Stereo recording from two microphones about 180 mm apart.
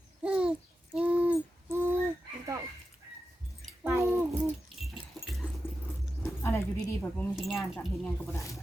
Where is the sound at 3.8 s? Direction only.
15° right (ahead or behind).